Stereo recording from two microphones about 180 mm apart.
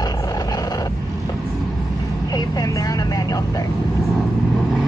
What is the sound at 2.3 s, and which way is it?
Vehicle, 20° left (ahead or behind).